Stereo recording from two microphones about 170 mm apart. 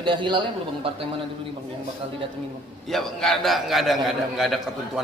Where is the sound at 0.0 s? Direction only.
30° right (ahead or behind).